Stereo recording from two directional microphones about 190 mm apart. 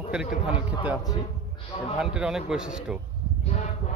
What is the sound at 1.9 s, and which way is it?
Speech, 5° right (ahead or behind).